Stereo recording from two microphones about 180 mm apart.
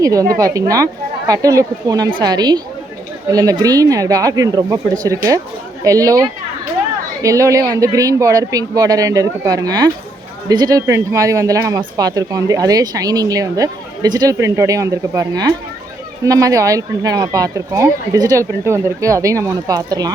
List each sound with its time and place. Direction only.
0.0 s speech: 20° right (ahead or behind)